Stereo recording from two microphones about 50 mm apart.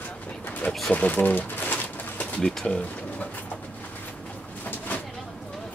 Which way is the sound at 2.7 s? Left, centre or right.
Left.